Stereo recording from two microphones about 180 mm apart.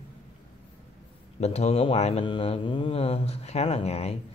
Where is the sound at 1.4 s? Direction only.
35° left (ahead or behind).